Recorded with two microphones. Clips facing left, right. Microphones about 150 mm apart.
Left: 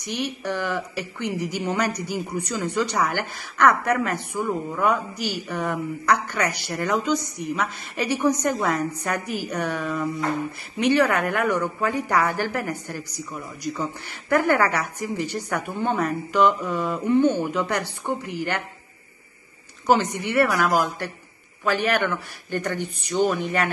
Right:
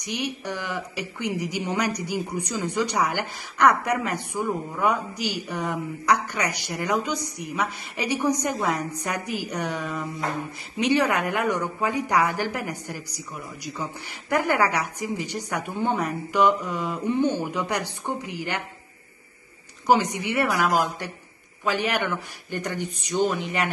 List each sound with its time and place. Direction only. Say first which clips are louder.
0.0 s speech: left 2 dB; 15° right (ahead or behind)
14.3 s speech: left 2 dB; 15° right (ahead or behind)
19.9 s speech: left 1 dB; 15° right (ahead or behind)